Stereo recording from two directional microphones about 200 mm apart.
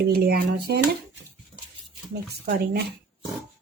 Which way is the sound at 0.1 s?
50° right (ahead or behind).